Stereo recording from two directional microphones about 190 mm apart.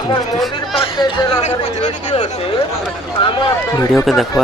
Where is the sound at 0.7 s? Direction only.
30° left (ahead or behind).